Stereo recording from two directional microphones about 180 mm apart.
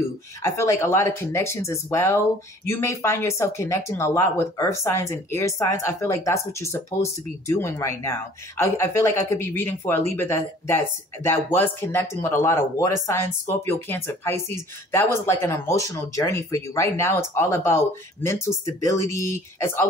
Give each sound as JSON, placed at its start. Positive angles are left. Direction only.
{"t": 0.4, "sound": "speech", "side_deg": 15}